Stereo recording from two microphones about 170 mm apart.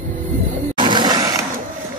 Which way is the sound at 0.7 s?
25° right (ahead or behind).